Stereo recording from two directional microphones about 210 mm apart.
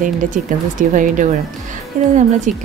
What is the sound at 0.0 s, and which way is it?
Speech, 40° right (ahead or behind).